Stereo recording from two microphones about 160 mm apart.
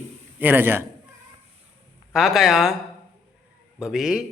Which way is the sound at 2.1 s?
Centre (ahead or behind).